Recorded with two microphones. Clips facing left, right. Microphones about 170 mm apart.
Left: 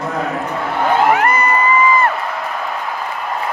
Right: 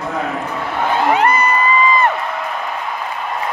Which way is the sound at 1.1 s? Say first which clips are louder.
Right 1 dB; 15° right (ahead or behind).